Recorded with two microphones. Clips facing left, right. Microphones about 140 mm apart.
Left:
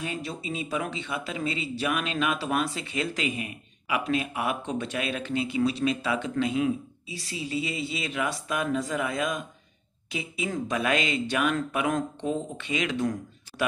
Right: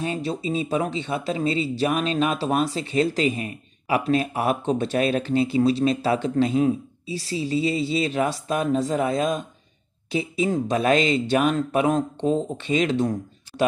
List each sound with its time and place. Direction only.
0.0 s speech: 30° right (ahead or behind)